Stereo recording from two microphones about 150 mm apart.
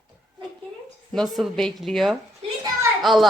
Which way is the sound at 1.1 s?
Centre (ahead or behind).